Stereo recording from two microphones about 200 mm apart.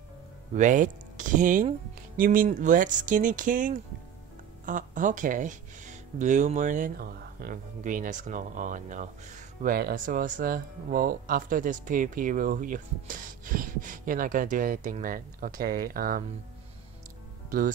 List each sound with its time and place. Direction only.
0.6 s speech: 40° right (ahead or behind)